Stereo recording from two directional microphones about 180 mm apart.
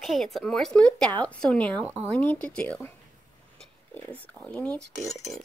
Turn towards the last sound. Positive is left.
turn(degrees=5)  # may be behind; listen again after turning